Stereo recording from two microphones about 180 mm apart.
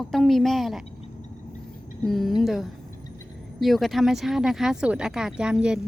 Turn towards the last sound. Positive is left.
turn(degrees=-5)  # may be behind; listen again after turning